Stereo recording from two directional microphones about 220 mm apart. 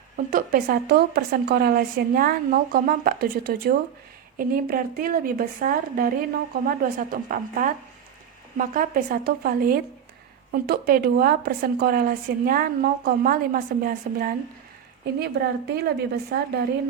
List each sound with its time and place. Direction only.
0.3 s a woman's voice: 40° right (ahead or behind)